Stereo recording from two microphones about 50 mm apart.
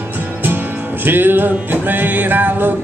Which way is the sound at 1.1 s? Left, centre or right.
Right.